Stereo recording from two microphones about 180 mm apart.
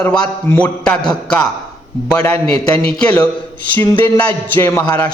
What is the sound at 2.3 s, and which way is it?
Speech, 30° right (ahead or behind).